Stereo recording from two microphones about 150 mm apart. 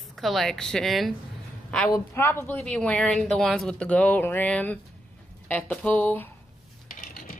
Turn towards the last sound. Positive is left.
turn(degrees=65)  # may be behind; listen again after turning